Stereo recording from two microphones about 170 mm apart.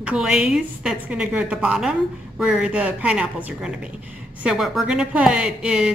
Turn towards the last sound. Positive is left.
turn(degrees=-5)  # may be behind; listen again after turning